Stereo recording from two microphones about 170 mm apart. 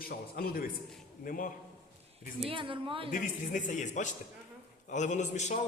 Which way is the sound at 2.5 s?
30° right (ahead or behind).